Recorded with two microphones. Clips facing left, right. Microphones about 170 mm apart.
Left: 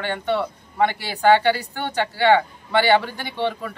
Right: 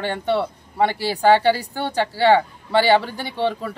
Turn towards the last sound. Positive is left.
turn(degrees=-35)  # may be behind; listen again after turning